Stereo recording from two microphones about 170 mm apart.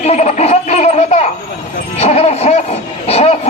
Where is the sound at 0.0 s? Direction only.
40° left (ahead or behind).